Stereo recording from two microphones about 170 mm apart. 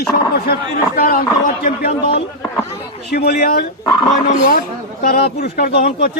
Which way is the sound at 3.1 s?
65° left (ahead or behind).